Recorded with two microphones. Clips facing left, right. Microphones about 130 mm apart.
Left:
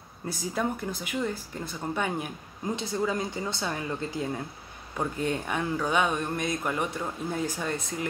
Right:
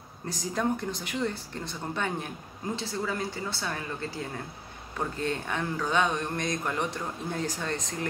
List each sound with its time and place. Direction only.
0.4 s a man's voice: 5° left (ahead or behind)